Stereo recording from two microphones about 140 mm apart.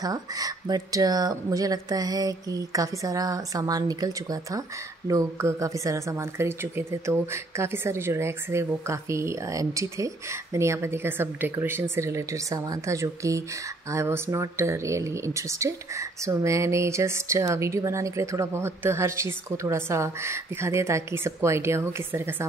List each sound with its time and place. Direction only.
0.0 s speech: 25° right (ahead or behind)